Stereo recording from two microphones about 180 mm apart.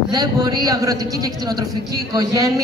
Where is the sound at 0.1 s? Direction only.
20° right (ahead or behind).